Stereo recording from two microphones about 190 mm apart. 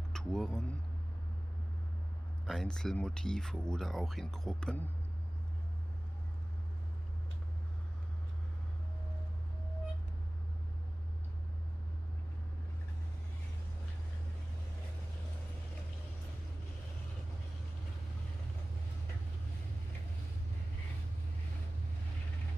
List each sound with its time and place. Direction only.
0.1 s speech: 5° left (ahead or behind)
2.4 s speech: centre (ahead or behind)